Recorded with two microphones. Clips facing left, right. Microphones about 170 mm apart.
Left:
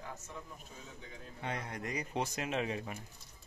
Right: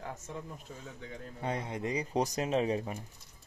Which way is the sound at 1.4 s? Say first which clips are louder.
Right 5 dB; 30° right (ahead or behind).